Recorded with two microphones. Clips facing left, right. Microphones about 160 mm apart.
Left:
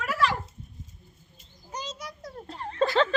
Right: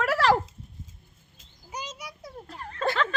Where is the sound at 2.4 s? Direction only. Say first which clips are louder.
Left 10 dB; 30° left (ahead or behind).